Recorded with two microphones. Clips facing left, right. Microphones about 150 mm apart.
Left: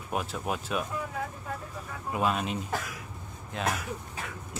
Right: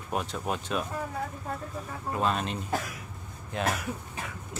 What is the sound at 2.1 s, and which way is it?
Speech, 5° left (ahead or behind).